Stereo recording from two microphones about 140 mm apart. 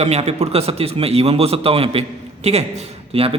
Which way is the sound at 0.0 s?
50° right (ahead or behind).